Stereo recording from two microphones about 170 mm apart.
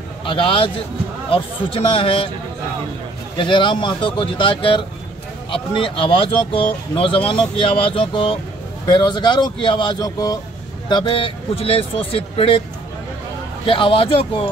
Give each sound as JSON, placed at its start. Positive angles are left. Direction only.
{"t": 0.2, "sound": "a man's voice", "side_deg": 30}
{"t": 3.3, "sound": "speech", "side_deg": 30}
{"t": 13.7, "sound": "speech", "side_deg": 30}